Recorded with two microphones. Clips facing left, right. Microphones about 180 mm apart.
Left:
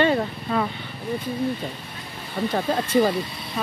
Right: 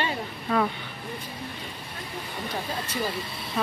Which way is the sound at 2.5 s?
55° left (ahead or behind).